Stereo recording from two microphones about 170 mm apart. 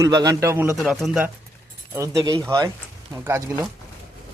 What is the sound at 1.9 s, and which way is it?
A man's voice, 20° right (ahead or behind).